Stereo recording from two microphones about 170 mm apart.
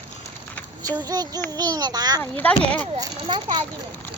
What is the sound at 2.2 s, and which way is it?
Speech, 10° left (ahead or behind).